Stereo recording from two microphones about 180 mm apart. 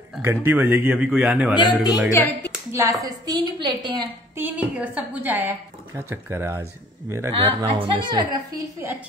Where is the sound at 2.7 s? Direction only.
15° right (ahead or behind).